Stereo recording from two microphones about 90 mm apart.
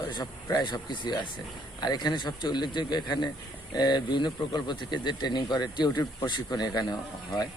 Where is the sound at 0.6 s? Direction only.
55° left (ahead or behind).